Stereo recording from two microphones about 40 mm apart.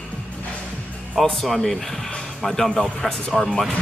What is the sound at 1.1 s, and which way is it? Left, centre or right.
A man's voice, centre.